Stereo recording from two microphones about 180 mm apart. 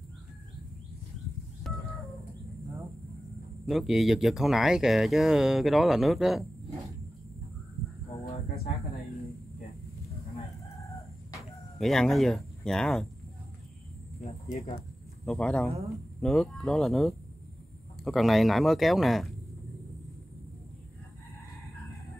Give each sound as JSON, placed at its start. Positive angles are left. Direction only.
{"t": 1.6, "sound": "a sound", "side_deg": 0}
{"t": 3.6, "sound": "speech", "side_deg": 0}
{"t": 11.3, "sound": "chicken", "side_deg": 0}
{"t": 12.6, "sound": "speech", "side_deg": 5}
{"t": 14.2, "sound": "speech", "side_deg": 35}
{"t": 15.2, "sound": "speech", "side_deg": 5}